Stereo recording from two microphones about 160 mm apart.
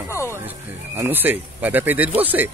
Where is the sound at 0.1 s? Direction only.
15° left (ahead or behind).